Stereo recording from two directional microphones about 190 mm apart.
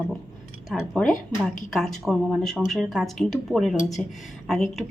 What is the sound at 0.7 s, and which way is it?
Speech, 5° left (ahead or behind).